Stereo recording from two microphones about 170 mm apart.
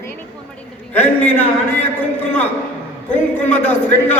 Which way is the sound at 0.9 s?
10° left (ahead or behind).